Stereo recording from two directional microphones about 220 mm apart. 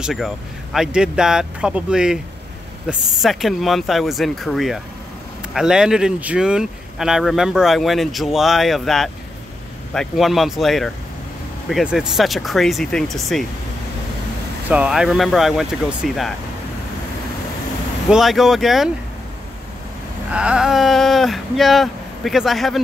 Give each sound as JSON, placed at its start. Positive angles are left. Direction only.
{"t": 0.0, "sound": "speech", "side_deg": 0}
{"t": 14.7, "sound": "speech", "side_deg": -5}
{"t": 18.1, "sound": "speech", "side_deg": 0}
{"t": 20.2, "sound": "speech", "side_deg": -5}